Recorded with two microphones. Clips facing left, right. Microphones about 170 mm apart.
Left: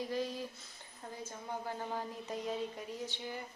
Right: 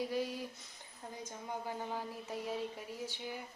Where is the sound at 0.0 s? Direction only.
10° right (ahead or behind).